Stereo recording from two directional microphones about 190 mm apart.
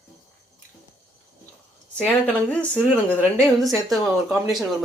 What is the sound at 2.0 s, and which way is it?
Speech, 5° left (ahead or behind).